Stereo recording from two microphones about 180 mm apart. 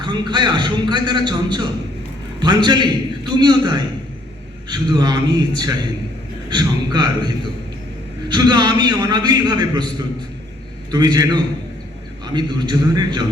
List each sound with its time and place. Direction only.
0.0 s a man's voice: 25° right (ahead or behind)
10.9 s a man's voice: 20° right (ahead or behind)